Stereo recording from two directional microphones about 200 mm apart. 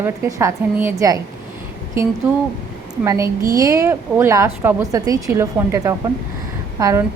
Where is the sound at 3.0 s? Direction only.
15° right (ahead or behind).